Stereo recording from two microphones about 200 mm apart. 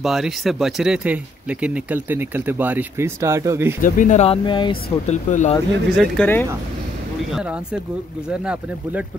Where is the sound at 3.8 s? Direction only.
40° left (ahead or behind); by 5.1 s 25° left (ahead or behind).